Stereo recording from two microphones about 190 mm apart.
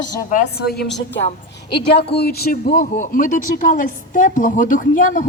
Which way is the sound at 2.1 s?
55° left (ahead or behind).